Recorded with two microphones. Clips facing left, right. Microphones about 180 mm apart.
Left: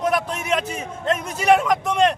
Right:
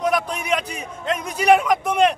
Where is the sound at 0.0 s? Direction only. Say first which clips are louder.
Even; centre (ahead or behind).